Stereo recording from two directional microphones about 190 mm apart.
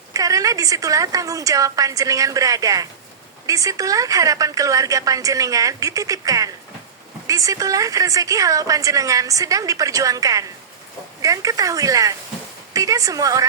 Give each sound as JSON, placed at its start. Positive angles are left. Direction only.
{"t": 0.1, "sound": "a woman's voice", "side_deg": -20}